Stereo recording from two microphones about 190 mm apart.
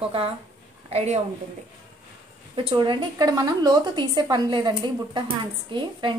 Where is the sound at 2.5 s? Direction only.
25° right (ahead or behind).